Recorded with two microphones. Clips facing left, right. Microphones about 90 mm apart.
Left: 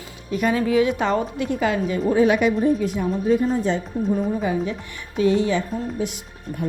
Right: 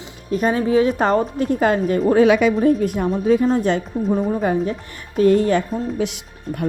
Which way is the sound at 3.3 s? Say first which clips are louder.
Right 4 dB; 90° right.